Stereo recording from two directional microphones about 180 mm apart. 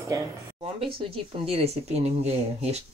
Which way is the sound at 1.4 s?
35° right (ahead or behind).